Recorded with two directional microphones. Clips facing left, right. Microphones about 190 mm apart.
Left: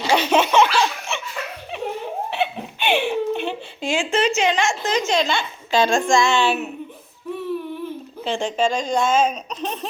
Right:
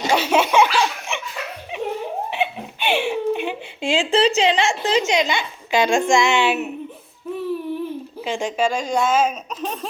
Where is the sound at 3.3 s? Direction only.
15° right (ahead or behind).